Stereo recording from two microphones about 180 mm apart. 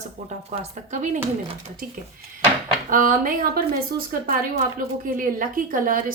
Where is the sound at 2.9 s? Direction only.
50° right (ahead or behind).